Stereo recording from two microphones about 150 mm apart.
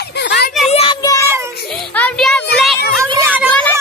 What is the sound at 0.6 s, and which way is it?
Child singing, 45° left (ahead or behind).